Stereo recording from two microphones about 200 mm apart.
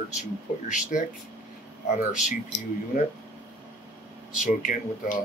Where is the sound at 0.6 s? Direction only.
40° left (ahead or behind).